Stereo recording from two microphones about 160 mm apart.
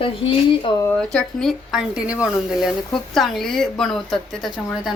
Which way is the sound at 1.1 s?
5° left (ahead or behind).